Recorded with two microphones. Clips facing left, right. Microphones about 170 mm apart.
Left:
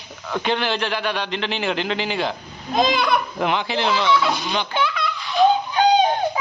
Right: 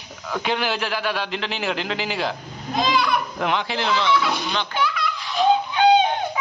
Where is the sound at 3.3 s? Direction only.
Centre (ahead or behind).